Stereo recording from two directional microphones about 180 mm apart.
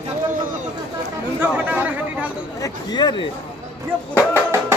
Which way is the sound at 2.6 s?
25° left (ahead or behind).